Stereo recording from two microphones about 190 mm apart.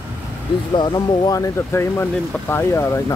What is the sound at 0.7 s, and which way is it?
Speech, 20° left (ahead or behind).